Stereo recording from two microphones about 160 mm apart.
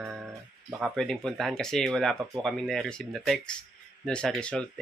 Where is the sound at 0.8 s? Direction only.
Centre (ahead or behind).